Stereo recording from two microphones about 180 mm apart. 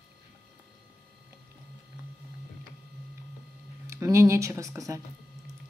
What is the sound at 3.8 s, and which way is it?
Speech, 15° right (ahead or behind).